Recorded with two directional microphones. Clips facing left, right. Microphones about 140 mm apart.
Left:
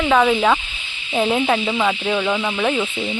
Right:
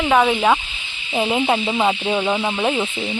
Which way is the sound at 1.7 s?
25° right (ahead or behind).